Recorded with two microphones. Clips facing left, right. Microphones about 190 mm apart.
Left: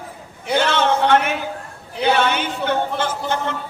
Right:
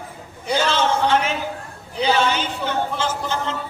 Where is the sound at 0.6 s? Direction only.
60° left (ahead or behind).